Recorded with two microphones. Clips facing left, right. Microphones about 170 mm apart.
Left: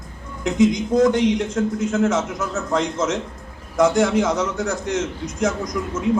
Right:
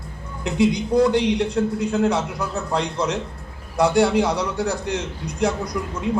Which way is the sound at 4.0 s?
35° right (ahead or behind).